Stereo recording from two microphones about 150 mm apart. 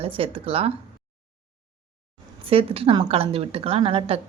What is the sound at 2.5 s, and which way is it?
Speech, 40° right (ahead or behind).